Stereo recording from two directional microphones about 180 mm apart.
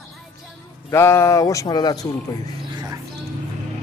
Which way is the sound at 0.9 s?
15° left (ahead or behind).